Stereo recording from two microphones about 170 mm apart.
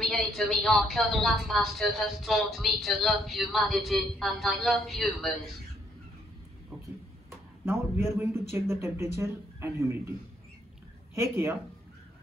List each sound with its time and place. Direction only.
0.0 s a woman's voice: centre (ahead or behind)
7.6 s a man's voice: 15° right (ahead or behind)
11.1 s a man's voice: 15° right (ahead or behind)